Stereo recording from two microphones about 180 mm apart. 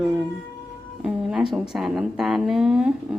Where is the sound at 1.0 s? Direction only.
5° right (ahead or behind).